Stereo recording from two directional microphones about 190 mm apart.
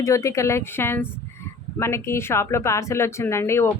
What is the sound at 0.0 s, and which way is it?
Speech, 15° left (ahead or behind).